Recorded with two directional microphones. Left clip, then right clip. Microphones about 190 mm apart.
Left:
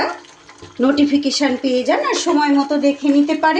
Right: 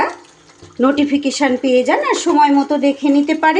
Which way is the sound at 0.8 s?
10° right (ahead or behind).